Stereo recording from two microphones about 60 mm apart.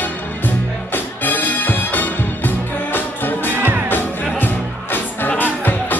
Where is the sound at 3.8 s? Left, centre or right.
Left.